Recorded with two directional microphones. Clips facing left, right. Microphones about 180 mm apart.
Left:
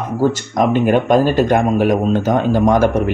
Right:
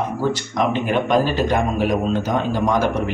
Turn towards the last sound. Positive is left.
turn(degrees=50)  # may be behind; listen again after turning